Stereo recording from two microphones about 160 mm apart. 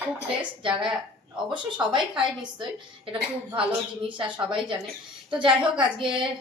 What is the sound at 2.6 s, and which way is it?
A woman's voice, 35° right (ahead or behind).